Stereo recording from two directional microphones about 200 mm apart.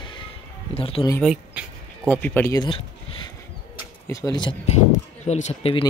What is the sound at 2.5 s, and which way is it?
Speech, 25° left (ahead or behind).